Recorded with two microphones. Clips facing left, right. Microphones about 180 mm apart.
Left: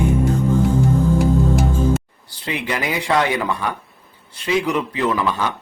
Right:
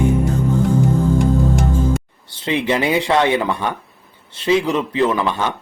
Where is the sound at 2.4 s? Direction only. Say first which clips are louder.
Right 6 dB; 25° right (ahead or behind).